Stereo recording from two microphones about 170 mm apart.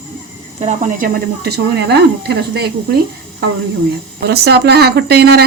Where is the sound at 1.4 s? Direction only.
75° right (ahead or behind).